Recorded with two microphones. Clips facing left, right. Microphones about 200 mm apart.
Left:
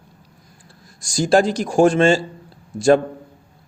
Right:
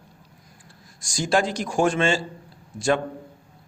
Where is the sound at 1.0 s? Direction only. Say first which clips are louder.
Left 7 dB; 35° left (ahead or behind).